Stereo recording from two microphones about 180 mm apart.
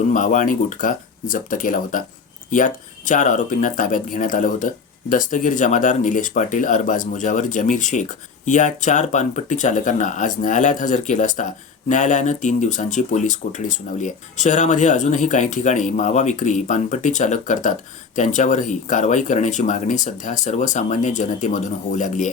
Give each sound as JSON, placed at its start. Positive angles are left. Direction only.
{"t": 0.1, "sound": "speech", "side_deg": 45}